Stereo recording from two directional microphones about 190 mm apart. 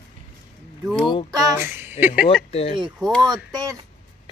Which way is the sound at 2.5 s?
30° left (ahead or behind).